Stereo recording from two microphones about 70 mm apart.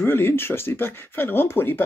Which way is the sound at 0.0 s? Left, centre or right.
Left.